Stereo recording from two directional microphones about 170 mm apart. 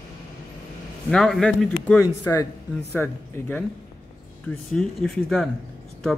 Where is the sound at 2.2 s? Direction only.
20° left (ahead or behind).